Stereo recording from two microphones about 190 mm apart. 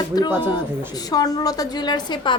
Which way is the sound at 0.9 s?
20° left (ahead or behind).